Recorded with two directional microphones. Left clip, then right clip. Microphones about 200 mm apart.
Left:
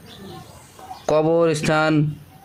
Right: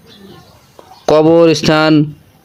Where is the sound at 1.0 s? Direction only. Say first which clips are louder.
Right 9 dB; 30° right (ahead or behind).